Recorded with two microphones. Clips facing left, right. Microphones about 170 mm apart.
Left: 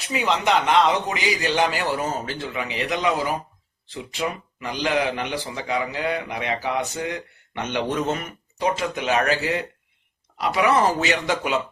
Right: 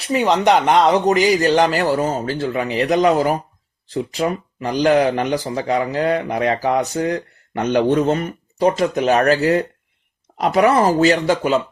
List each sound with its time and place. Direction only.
0.1 s speech: 40° right (ahead or behind)